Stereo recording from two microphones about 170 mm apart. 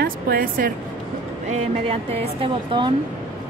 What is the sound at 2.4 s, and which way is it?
Speech, 30° right (ahead or behind).